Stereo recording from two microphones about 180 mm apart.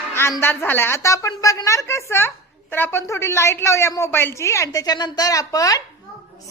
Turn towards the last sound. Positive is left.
turn(degrees=20)  # may be behind; listen again after turning